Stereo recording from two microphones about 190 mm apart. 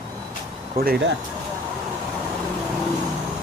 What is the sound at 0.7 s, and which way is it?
Speech, 50° right (ahead or behind).